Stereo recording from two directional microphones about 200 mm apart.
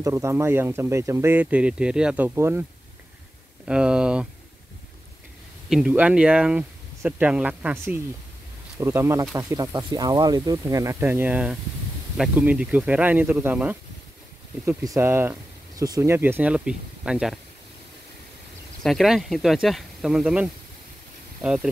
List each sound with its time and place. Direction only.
0.0 s speech: 15° right (ahead or behind)
3.6 s speech: 5° right (ahead or behind)
5.7 s speech: 5° right (ahead or behind)
18.8 s speech: centre (ahead or behind)